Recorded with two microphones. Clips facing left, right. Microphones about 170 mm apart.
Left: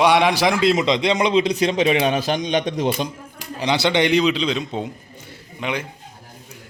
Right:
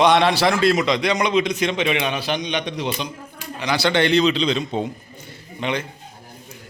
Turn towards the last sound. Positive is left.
turn(degrees=5)  # may be behind; listen again after turning